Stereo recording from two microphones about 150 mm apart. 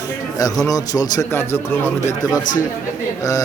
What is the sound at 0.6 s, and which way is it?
Speech, 25° left (ahead or behind).